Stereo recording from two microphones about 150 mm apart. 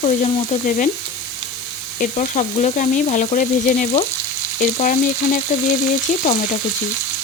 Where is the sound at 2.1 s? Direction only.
50° left (ahead or behind).